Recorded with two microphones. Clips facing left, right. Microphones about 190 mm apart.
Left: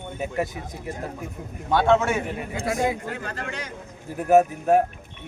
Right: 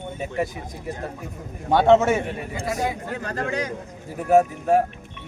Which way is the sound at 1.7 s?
20° right (ahead or behind).